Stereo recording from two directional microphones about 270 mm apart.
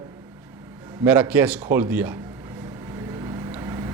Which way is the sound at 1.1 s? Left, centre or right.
Centre.